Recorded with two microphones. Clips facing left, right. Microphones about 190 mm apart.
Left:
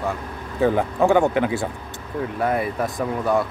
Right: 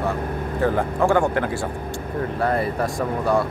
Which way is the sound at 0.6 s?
15° left (ahead or behind).